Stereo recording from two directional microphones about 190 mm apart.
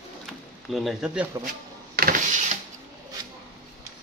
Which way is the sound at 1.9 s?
50° right (ahead or behind).